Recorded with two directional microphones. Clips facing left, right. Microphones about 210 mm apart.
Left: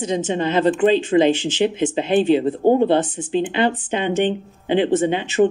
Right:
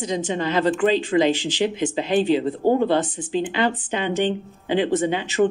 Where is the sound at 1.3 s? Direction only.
15° right (ahead or behind).